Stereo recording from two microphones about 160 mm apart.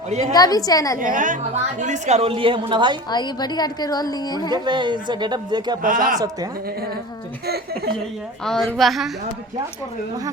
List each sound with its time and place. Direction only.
0.1 s a woman's voice: 45° right (ahead or behind)
0.3 s a woman's voice: 25° left (ahead or behind)
0.9 s a woman's voice: 55° right (ahead or behind); by 3.0 s 30° right (ahead or behind)
3.1 s a woman's voice: 25° left (ahead or behind)
4.5 s speech: 30° right (ahead or behind)
5.8 s a woman's voice: 55° right (ahead or behind)
6.1 s speech: 25° right (ahead or behind)
8.4 s a woman's voice: centre (ahead or behind)